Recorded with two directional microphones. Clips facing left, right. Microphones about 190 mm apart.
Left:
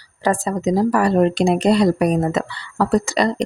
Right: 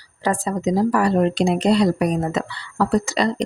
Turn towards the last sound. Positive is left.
turn(degrees=50)  # may be behind; listen again after turning